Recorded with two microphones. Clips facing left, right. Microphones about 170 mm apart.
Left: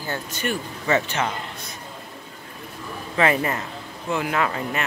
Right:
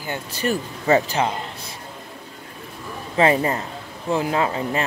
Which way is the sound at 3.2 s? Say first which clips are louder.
Right 3 dB; 30° right (ahead or behind).